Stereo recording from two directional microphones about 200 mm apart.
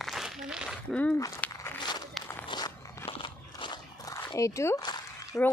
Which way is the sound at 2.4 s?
20° left (ahead or behind).